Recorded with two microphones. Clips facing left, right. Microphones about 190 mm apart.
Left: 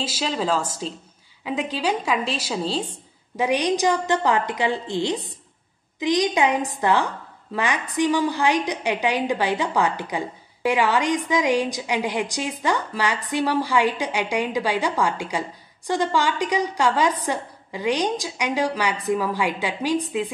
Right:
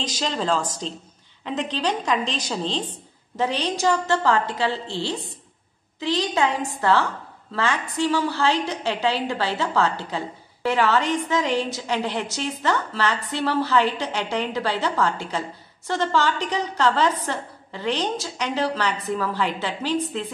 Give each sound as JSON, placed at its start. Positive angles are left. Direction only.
{"t": 0.0, "sound": "a woman's voice", "side_deg": 5}